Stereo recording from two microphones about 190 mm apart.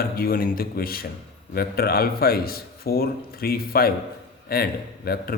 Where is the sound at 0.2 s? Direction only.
50° left (ahead or behind).